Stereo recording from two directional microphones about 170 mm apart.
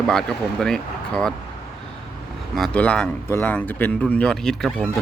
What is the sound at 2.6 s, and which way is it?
Speech, 5° left (ahead or behind).